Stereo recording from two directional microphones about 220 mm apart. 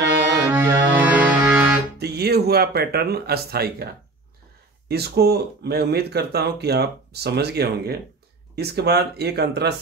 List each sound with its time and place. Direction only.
0.5 s music: 10° right (ahead or behind)
2.0 s speech: 45° right (ahead or behind)